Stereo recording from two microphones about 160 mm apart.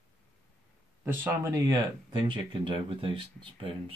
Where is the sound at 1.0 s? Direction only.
15° right (ahead or behind).